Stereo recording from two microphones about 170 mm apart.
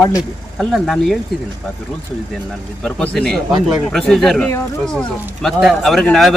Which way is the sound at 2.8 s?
5° left (ahead or behind).